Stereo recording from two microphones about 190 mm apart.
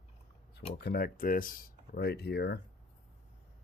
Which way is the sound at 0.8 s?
55° left (ahead or behind).